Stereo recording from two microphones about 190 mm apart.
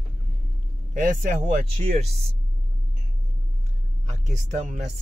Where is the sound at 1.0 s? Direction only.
45° right (ahead or behind).